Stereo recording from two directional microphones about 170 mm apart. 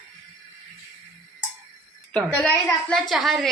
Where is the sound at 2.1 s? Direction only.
5° left (ahead or behind).